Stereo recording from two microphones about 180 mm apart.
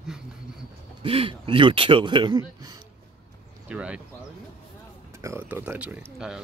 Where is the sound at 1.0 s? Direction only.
30° right (ahead or behind).